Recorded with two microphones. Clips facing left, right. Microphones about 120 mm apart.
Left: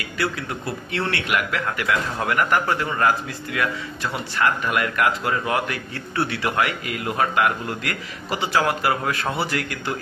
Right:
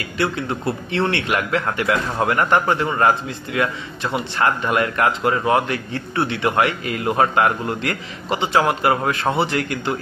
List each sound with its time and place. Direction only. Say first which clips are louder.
0.2 s a man's voice: right 4 dB; 30° right (ahead or behind)